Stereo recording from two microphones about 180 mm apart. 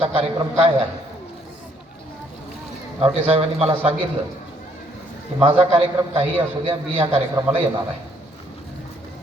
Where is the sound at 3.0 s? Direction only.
30° right (ahead or behind).